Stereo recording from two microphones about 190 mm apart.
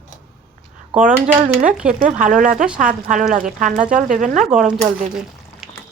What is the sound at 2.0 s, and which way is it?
A woman's voice, 45° right (ahead or behind).